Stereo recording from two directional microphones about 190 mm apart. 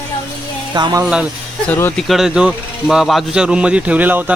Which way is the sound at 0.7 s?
20° right (ahead or behind).